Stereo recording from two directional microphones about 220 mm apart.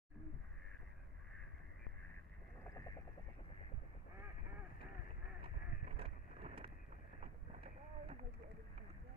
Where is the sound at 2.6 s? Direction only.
15° left (ahead or behind).